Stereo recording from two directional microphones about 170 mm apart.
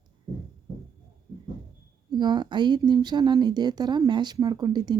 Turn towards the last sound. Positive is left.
turn(degrees=-25)  # may be behind; listen again after turning